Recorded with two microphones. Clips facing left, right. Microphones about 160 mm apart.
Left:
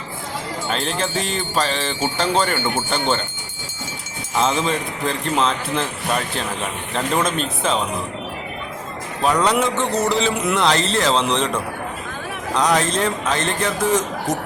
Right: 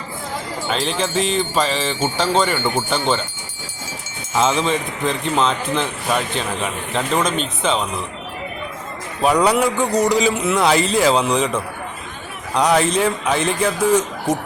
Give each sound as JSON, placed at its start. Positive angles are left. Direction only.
{"t": 0.7, "sound": "a man's voice", "side_deg": 0}
{"t": 4.4, "sound": "a man's voice", "side_deg": 0}
{"t": 9.2, "sound": "a man's voice", "side_deg": -10}